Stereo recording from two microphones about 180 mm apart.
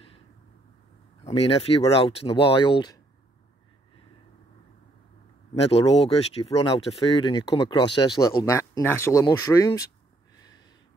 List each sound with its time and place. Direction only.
1.2 s speech: 35° left (ahead or behind)
5.5 s speech: 35° left (ahead or behind)